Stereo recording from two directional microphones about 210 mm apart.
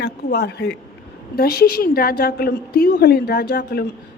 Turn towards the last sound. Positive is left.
turn(degrees=50)  # may be behind; listen again after turning